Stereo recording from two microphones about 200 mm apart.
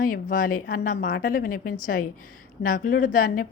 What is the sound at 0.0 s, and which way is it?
A woman's voice, 45° left (ahead or behind).